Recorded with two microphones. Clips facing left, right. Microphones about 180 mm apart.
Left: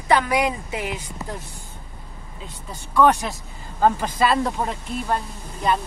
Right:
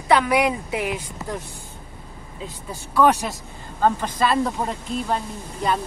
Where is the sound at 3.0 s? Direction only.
Centre (ahead or behind).